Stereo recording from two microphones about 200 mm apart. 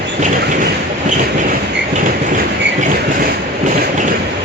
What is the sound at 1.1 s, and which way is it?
Train, 40° right (ahead or behind).